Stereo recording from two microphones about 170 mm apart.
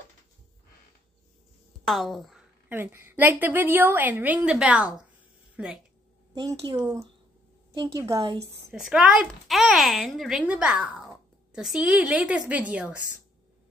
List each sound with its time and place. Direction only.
1.9 s speech: centre (ahead or behind)
2.7 s a woman's voice: 15° right (ahead or behind)
6.3 s a woman's voice: 25° right (ahead or behind)
6.8 s speech: 5° right (ahead or behind)
7.7 s a woman's voice: 20° right (ahead or behind)
8.7 s a woman's voice: centre (ahead or behind)